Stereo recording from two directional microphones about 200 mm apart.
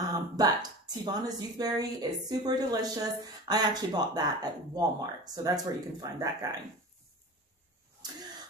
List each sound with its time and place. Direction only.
0.1 s speech: 20° right (ahead or behind)